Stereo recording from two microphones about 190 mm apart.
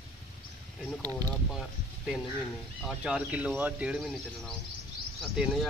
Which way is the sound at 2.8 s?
5° right (ahead or behind).